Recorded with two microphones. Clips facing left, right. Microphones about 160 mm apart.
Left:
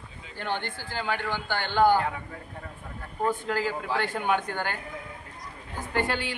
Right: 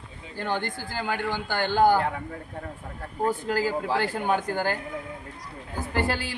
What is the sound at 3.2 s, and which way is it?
Speech, 35° right (ahead or behind).